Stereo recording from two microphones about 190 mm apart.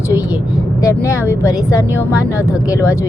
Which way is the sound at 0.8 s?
15° left (ahead or behind).